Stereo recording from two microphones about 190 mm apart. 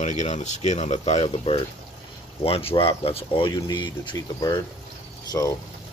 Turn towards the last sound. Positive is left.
turn(degrees=15)  # may be behind; listen again after turning